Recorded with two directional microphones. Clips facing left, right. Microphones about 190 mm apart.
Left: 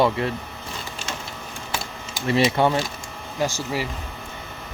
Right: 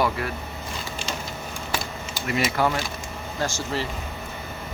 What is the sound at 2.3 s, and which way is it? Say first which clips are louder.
Speech: left 5 dB; 30° left (ahead or behind).